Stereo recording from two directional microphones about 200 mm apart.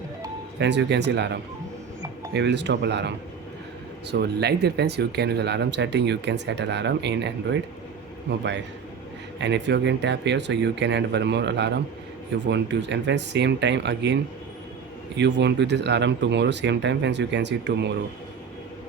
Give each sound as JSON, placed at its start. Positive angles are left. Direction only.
{"t": 0.6, "sound": "speech", "side_deg": -60}
{"t": 4.1, "sound": "speech", "side_deg": -55}
{"t": 15.2, "sound": "speech", "side_deg": -60}